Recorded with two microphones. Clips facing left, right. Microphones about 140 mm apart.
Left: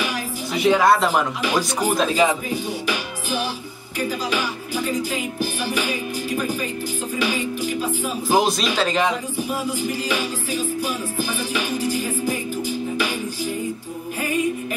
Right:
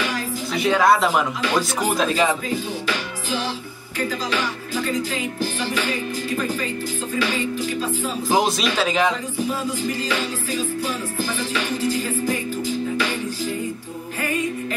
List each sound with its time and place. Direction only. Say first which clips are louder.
0.0 s music: right 1 dB; 15° left (ahead or behind)
0.8 s speech: even; centre (ahead or behind)
1.4 s music: even; 10° left (ahead or behind)
2.0 s speech: left 1 dB; centre (ahead or behind)
2.2 s music: left 1 dB; 15° left (ahead or behind)
8.4 s speech: left 1 dB; centre (ahead or behind)
9.4 s music: right 2 dB; 10° left (ahead or behind)